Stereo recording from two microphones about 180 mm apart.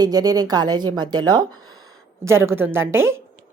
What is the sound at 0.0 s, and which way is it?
Speech, 20° right (ahead or behind).